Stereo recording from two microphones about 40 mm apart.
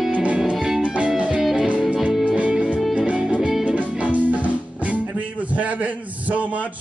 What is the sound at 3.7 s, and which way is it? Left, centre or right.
Music, right.